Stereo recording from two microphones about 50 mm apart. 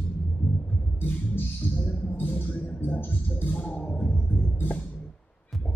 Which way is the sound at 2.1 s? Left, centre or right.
Left.